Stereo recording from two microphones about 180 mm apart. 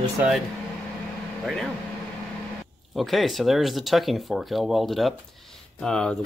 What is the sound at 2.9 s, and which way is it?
Speech, centre (ahead or behind).